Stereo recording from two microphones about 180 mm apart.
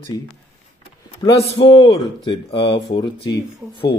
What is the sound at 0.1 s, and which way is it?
Speech, 20° left (ahead or behind).